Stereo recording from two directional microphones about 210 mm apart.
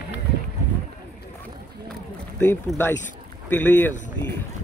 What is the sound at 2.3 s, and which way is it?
Speech, 10° left (ahead or behind).